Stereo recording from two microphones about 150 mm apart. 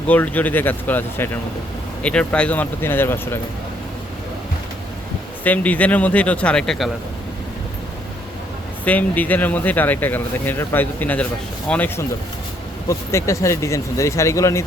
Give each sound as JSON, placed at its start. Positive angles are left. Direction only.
{"t": 0.1, "sound": "speech", "side_deg": 10}
{"t": 5.4, "sound": "speech", "side_deg": 10}
{"t": 8.8, "sound": "speech", "side_deg": 10}